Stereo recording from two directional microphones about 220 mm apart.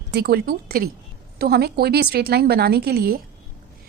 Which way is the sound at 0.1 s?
45° right (ahead or behind).